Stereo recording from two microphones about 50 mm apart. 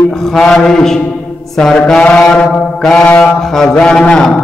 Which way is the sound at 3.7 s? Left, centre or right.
Centre.